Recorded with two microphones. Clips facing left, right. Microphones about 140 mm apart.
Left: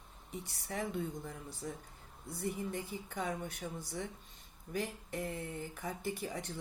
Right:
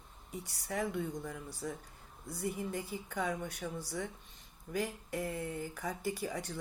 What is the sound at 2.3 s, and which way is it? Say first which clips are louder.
Speech: right 1 dB; 15° right (ahead or behind).